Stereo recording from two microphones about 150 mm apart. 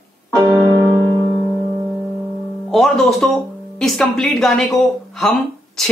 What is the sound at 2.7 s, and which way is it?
Speech, centre (ahead or behind).